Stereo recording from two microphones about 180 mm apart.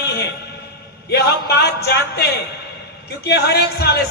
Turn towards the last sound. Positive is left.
turn(degrees=65)  # may be behind; listen again after turning